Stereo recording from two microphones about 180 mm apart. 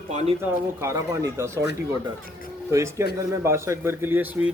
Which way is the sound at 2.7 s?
15° right (ahead or behind).